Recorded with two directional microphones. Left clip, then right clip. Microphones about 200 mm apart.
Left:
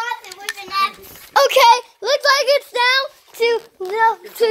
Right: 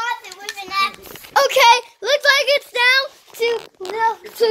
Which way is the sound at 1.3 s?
15° left (ahead or behind).